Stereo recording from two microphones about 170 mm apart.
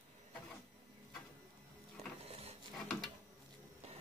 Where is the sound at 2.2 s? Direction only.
35° right (ahead or behind).